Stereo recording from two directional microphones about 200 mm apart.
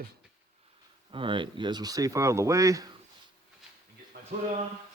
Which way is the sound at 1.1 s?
25° right (ahead or behind).